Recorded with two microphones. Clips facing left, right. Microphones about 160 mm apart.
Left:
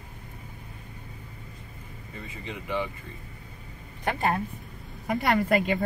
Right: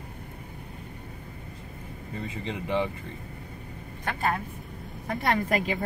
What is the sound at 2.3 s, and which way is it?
Speech, 30° right (ahead or behind).